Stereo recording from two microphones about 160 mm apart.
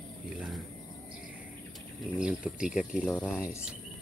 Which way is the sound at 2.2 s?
5° right (ahead or behind).